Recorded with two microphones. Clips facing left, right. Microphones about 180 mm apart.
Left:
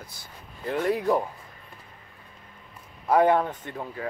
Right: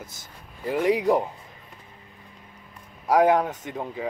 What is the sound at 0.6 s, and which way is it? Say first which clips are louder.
Speech: right 3 dB; 10° right (ahead or behind).